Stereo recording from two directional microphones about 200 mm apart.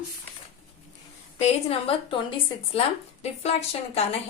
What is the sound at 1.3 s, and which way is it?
A woman's voice, 30° left (ahead or behind).